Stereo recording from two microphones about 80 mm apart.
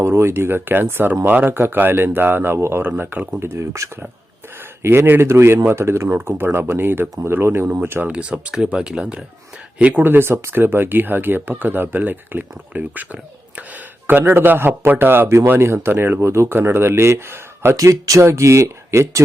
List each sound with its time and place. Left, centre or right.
0.0 s speech: right
17.7 s speech: right